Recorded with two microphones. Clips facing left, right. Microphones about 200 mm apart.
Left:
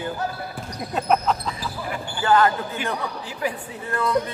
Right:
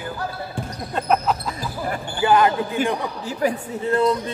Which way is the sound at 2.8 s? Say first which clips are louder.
Right 5 dB; 45° right (ahead or behind).